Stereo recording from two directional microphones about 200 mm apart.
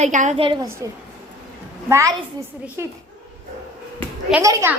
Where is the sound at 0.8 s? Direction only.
15° right (ahead or behind).